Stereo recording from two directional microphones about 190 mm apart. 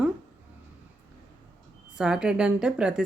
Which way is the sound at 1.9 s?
5° right (ahead or behind).